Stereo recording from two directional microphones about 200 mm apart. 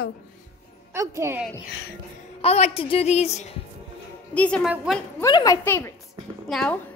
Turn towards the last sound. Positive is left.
turn(degrees=0)  # may be behind; listen again after turning